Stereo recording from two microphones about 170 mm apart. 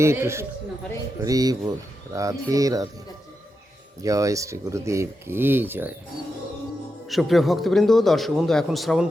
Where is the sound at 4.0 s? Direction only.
20° right (ahead or behind).